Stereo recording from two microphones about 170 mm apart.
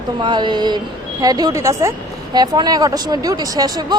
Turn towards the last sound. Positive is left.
turn(degrees=-25)  # may be behind; listen again after turning